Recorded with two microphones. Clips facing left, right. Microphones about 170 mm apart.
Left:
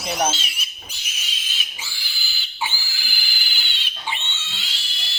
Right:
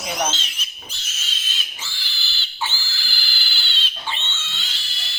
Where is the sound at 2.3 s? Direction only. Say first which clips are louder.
Even; 10° left (ahead or behind).